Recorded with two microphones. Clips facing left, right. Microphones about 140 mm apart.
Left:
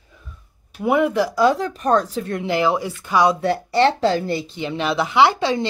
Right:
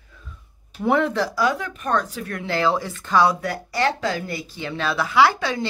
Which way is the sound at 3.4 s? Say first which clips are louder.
Left 6 dB; 25° left (ahead or behind).